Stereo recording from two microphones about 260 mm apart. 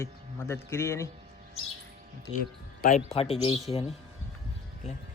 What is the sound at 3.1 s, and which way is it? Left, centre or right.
Speech, left.